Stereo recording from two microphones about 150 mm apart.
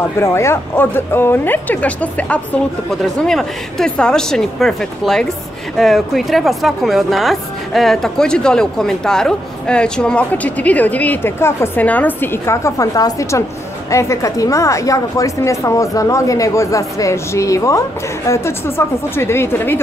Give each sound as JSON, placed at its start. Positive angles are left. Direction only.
{"t": 0.2, "sound": "a woman's voice", "side_deg": 20}